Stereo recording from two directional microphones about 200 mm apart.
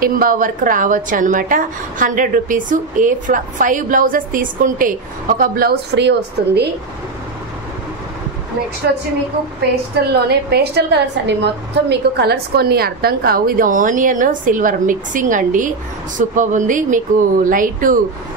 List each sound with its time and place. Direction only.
0.0 s a woman's voice: 45° right (ahead or behind)
8.9 s a woman's voice: 60° right (ahead or behind); by 17.9 s 45° right (ahead or behind)